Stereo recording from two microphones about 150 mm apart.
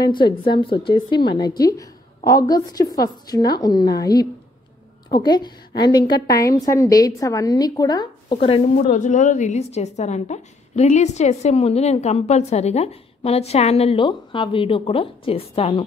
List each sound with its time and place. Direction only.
0.0 s a woman's voice: 30° left (ahead or behind)
8.8 s a woman's voice: 55° left (ahead or behind)